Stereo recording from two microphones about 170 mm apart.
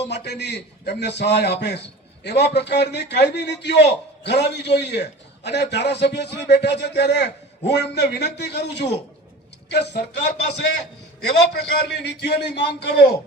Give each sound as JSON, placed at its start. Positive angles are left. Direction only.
{"t": 0.0, "sound": "a man's voice", "side_deg": 85}
{"t": 11.3, "sound": "a man's voice", "side_deg": 90}